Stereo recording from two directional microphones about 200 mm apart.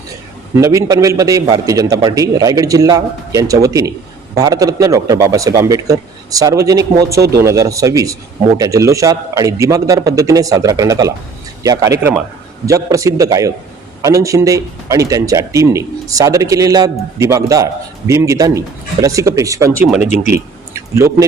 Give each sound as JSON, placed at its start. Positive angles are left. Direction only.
{"t": 0.5, "sound": "speech", "side_deg": -15}